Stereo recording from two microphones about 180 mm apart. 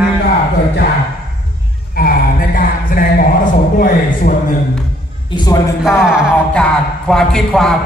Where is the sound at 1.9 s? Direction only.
55° left (ahead or behind).